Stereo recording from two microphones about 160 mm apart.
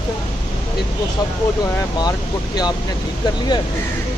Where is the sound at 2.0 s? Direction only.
25° left (ahead or behind).